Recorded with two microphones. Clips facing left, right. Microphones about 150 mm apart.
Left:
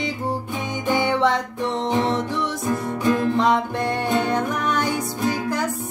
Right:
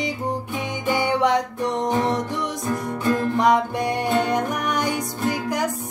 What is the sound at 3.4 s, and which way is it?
Music, 15° right (ahead or behind).